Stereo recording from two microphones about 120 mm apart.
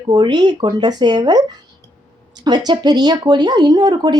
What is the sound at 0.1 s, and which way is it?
Speech, 35° right (ahead or behind).